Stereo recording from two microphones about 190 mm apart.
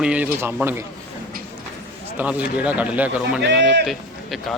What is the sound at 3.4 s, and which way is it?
Speech, 65° right (ahead or behind).